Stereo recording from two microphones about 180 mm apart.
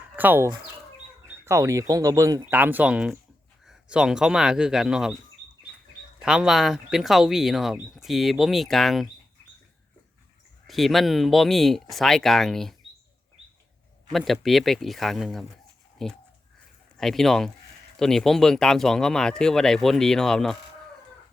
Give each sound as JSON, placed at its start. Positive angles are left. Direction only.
{"t": 0.2, "sound": "speech", "side_deg": -10}
{"t": 6.1, "sound": "speech", "side_deg": -5}
{"t": 10.7, "sound": "speech", "side_deg": 0}
{"t": 14.1, "sound": "speech", "side_deg": 0}